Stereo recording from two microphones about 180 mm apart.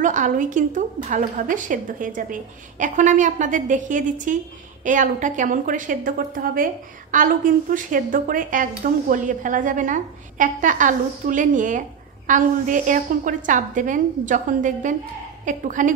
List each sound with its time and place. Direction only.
0.0 s a woman's voice: 45° right (ahead or behind)